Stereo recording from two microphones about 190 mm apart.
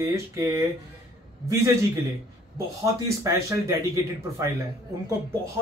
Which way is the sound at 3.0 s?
15° right (ahead or behind).